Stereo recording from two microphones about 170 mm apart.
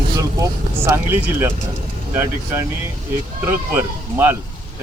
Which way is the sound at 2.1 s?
15° right (ahead or behind).